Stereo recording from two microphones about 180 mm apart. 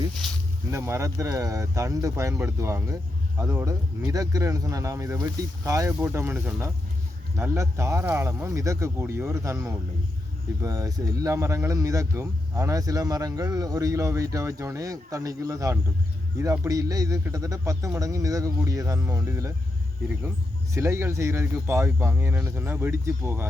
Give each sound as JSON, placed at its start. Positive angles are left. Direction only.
{"t": 0.7, "sound": "a man's voice", "side_deg": -15}
{"t": 20.7, "sound": "speech", "side_deg": -15}